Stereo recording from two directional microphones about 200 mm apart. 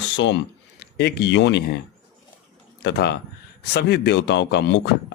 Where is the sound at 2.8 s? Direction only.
55° left (ahead or behind).